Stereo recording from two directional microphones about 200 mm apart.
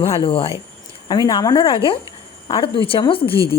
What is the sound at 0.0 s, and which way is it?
Speech, 25° left (ahead or behind).